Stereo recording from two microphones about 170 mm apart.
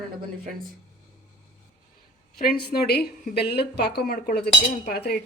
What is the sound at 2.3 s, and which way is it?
Speech, 60° left (ahead or behind).